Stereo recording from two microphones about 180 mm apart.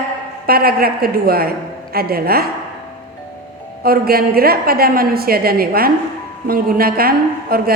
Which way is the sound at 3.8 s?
55° right (ahead or behind).